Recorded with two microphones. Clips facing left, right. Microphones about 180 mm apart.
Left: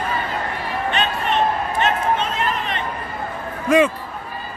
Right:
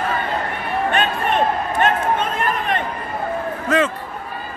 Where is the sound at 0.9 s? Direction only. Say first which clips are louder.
Right 1 dB; 50° right (ahead or behind).